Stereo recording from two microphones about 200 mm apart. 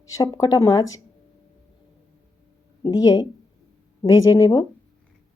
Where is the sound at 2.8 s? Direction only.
20° left (ahead or behind).